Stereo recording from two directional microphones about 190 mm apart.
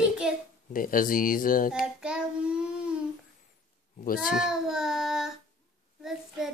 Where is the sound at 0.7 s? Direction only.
45° left (ahead or behind).